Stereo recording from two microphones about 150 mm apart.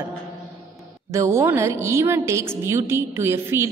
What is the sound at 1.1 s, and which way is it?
A woman's voice, 20° right (ahead or behind).